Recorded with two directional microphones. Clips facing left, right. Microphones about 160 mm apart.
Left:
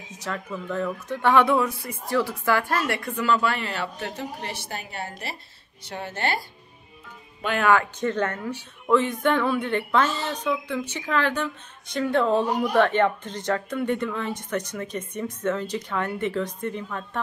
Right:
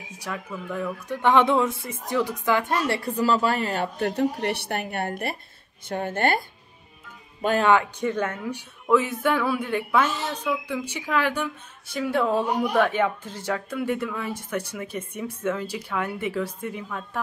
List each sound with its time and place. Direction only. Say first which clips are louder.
0.2 s a woman's voice: left 2 dB; 10° right (ahead or behind)
3.0 s speech: right 1 dB; 35° right (ahead or behind); by 6.4 s 50° right (ahead or behind)
7.6 s a woman's voice: left 2 dB; 15° right (ahead or behind)